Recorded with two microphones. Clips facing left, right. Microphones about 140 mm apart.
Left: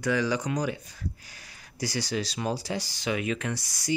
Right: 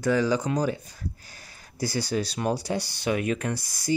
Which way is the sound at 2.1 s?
55° right (ahead or behind).